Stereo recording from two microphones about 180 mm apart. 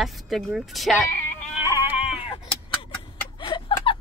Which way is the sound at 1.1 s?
10° left (ahead or behind).